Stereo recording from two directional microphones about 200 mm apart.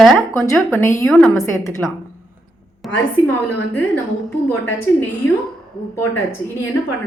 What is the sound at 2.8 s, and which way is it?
Speech, 5° left (ahead or behind).